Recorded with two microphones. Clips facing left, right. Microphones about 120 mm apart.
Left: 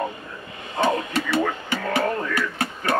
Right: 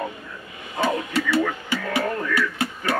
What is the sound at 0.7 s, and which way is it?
Radio, 20° left (ahead or behind).